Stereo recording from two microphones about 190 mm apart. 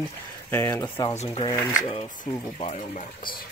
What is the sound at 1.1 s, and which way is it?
Speech, 30° left (ahead or behind).